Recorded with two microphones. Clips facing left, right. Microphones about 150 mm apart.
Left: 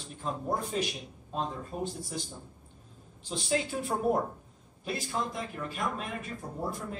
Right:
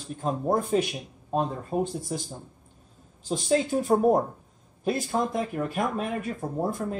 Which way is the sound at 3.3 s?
40° right (ahead or behind).